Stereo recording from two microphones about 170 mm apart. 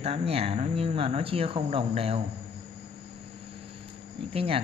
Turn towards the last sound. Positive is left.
turn(degrees=-35)  # may be behind; listen again after turning